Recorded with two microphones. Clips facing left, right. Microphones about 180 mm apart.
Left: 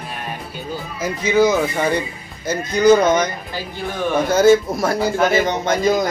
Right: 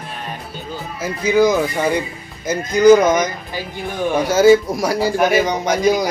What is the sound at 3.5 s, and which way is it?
A man's voice, 15° right (ahead or behind).